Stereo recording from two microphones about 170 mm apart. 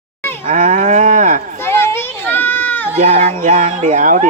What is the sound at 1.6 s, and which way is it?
Children playing, 15° left (ahead or behind).